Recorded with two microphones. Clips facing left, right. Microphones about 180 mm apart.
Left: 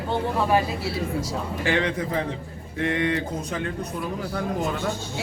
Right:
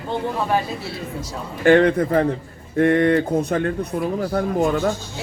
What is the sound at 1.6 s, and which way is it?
Speech, 55° right (ahead or behind).